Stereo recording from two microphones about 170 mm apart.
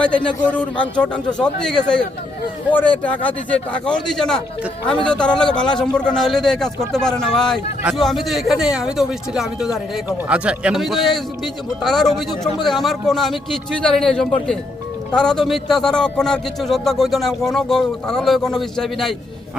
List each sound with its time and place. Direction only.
0.0 s a man's voice: 5° left (ahead or behind)